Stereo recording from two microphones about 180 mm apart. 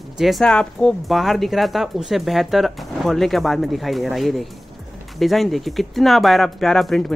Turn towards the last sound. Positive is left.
turn(degrees=0)  # may be behind; listen again after turning